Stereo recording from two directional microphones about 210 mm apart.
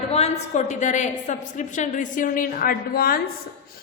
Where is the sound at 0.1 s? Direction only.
30° left (ahead or behind).